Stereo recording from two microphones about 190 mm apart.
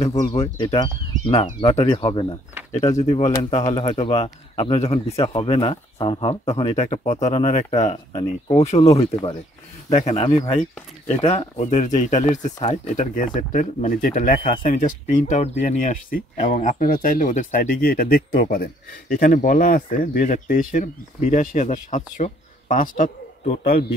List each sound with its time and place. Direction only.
0.4 s speech: 30° left (ahead or behind)
9.1 s speech: 20° left (ahead or behind); by 23.9 s 50° left (ahead or behind)